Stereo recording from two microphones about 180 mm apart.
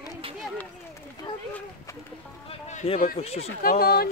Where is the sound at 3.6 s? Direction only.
55° left (ahead or behind).